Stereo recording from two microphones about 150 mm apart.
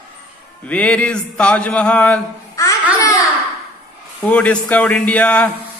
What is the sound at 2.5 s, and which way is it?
Babbling, 20° left (ahead or behind).